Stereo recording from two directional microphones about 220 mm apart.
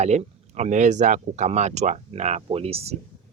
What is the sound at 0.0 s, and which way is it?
Speech, 30° right (ahead or behind).